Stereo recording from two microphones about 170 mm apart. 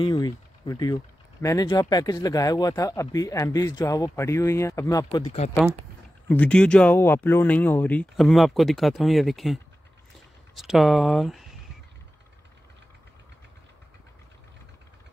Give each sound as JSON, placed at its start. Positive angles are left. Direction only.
{"t": 0.0, "sound": "speech", "side_deg": 25}
{"t": 6.2, "sound": "speech", "side_deg": 10}